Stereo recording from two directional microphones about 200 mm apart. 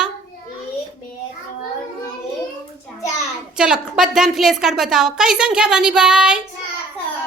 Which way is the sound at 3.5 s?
5° right (ahead or behind).